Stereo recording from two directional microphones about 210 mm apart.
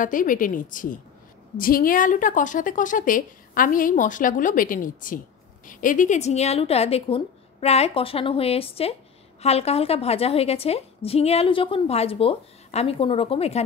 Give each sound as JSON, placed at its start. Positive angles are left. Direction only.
{"t": 0.0, "sound": "a woman's voice", "side_deg": 40}